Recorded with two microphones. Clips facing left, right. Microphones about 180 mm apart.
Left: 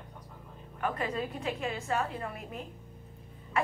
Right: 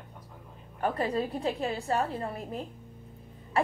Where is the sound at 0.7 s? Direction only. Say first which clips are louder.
Right 4 dB; 35° right (ahead or behind).